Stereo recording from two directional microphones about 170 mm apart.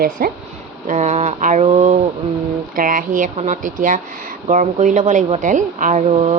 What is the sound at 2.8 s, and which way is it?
A woman's voice, 55° right (ahead or behind).